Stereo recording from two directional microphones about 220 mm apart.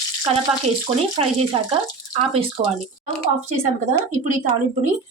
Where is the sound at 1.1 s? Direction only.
25° right (ahead or behind).